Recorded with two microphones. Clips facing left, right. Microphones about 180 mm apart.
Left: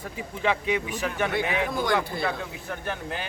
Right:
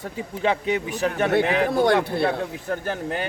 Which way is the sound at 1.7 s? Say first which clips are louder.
Right 7 dB; 65° right (ahead or behind).